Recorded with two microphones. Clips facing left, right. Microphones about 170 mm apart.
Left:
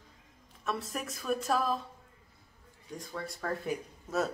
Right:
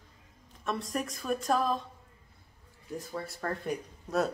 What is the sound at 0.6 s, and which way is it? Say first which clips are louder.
Speech: right 3 dB; centre (ahead or behind).